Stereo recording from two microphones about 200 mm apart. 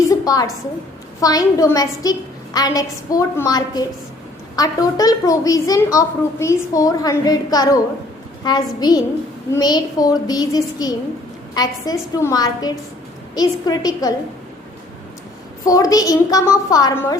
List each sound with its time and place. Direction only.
0.1 s a sound: 20° left (ahead or behind)
1.2 s a woman's voice: 20° left (ahead or behind)
15.6 s a woman's voice: 15° left (ahead or behind)